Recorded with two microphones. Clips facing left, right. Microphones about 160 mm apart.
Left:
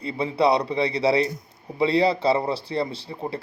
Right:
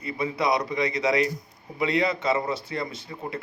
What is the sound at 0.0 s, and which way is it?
A man's voice, 30° left (ahead or behind).